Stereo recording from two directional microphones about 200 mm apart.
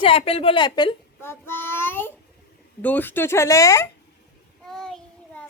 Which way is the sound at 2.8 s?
10° left (ahead or behind).